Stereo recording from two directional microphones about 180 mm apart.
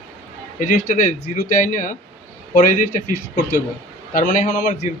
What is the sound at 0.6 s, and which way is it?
A man's voice, 45° left (ahead or behind).